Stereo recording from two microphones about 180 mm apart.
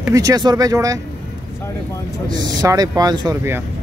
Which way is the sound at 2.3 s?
20° right (ahead or behind).